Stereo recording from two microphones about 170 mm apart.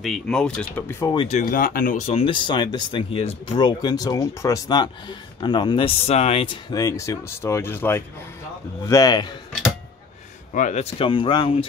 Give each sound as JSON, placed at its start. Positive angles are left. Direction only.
{"t": 0.0, "sound": "speech", "side_deg": 5}
{"t": 1.1, "sound": "speech", "side_deg": 35}
{"t": 1.4, "sound": "speech", "side_deg": 55}
{"t": 2.0, "sound": "speech", "side_deg": 35}
{"t": 10.5, "sound": "speech", "side_deg": 45}